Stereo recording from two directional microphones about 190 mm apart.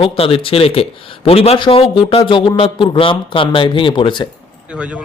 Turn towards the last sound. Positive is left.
turn(degrees=25)  # may be behind; listen again after turning